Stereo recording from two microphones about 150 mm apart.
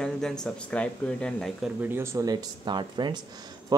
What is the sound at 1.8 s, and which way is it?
Speech, 15° right (ahead or behind).